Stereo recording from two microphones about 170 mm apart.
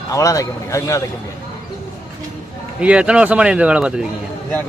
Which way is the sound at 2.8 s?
5° right (ahead or behind).